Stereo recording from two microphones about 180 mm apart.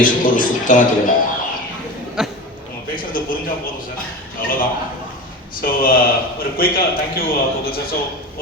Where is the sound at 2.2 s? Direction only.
5° right (ahead or behind).